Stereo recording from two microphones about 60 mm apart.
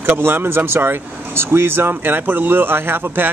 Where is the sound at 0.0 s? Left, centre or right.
Right.